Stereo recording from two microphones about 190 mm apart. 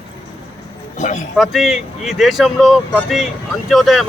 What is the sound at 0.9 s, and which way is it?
Speech, 40° left (ahead or behind).